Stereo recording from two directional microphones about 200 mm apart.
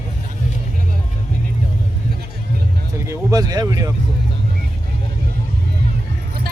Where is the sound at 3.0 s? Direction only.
20° right (ahead or behind).